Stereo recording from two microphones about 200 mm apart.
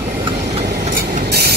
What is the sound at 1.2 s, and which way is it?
Spray, 50° right (ahead or behind).